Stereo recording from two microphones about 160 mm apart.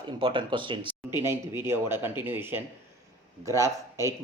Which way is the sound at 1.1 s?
15° right (ahead or behind).